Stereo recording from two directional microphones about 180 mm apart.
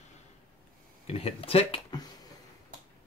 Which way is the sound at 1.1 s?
30° left (ahead or behind).